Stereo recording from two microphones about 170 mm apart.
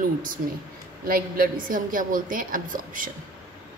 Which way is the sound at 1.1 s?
60° right (ahead or behind).